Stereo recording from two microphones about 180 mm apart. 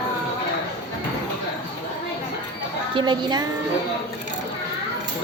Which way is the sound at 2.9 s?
25° right (ahead or behind).